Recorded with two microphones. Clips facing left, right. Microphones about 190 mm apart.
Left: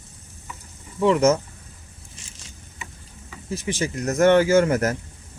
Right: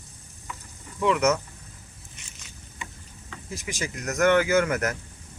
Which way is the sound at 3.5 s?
30° left (ahead or behind).